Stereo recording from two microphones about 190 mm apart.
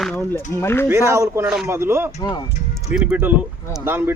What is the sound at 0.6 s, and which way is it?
Speech, 10° left (ahead or behind).